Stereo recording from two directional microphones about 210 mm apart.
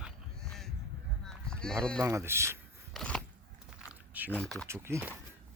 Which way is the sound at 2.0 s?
15° right (ahead or behind).